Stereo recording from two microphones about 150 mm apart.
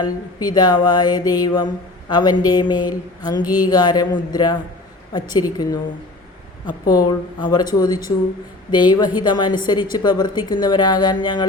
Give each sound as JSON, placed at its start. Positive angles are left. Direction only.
{"t": 0.0, "sound": "mantra", "side_deg": 25}